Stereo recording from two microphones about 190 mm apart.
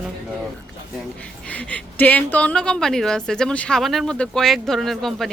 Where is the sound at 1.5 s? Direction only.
5° left (ahead or behind).